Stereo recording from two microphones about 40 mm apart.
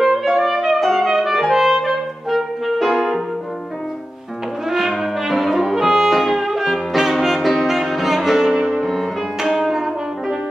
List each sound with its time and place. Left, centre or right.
0.0 s music: centre
0.7 s music: centre
4.6 s brass instrument: centre
6.9 s music: centre